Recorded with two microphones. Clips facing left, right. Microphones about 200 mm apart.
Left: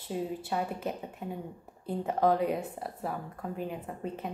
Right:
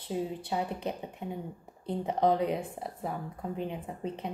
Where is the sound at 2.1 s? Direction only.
20° right (ahead or behind).